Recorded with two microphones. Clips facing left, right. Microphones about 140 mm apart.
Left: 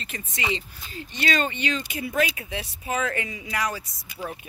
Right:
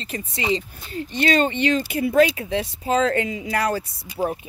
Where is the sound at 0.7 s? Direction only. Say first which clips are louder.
Right 8 dB; 45° right (ahead or behind).